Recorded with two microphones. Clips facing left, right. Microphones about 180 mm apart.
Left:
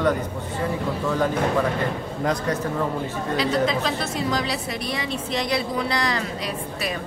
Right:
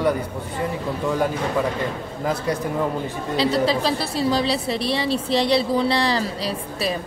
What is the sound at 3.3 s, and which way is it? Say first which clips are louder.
A woman's voice: right 3 dB; 30° right (ahead or behind).